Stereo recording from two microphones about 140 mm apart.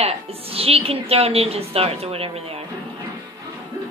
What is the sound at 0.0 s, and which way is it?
A woman's voice, 45° right (ahead or behind).